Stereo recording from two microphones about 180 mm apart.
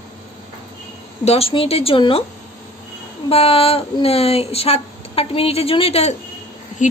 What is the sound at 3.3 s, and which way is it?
Speech, 30° left (ahead or behind).